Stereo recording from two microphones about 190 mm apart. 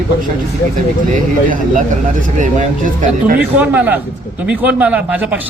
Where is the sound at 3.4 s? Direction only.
5° right (ahead or behind).